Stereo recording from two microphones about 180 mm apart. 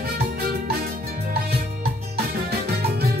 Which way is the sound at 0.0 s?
60° right (ahead or behind).